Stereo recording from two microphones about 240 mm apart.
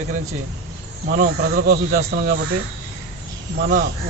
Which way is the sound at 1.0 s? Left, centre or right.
Right.